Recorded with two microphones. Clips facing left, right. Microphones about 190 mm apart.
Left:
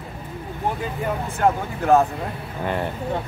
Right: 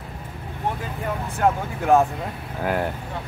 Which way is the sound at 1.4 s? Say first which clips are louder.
Left 1 dB; centre (ahead or behind).